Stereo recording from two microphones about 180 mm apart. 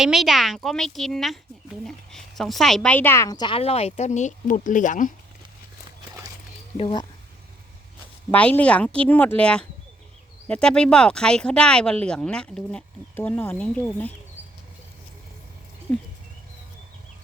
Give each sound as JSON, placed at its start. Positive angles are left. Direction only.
{"t": 0.0, "sound": "a woman's voice", "side_deg": 0}
{"t": 6.7, "sound": "speech", "side_deg": 30}
{"t": 8.3, "sound": "speech", "side_deg": 10}